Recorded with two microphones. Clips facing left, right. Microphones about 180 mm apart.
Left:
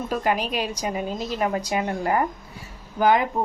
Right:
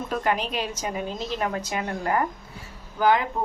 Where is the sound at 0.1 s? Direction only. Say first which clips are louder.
Left 1 dB; 10° left (ahead or behind).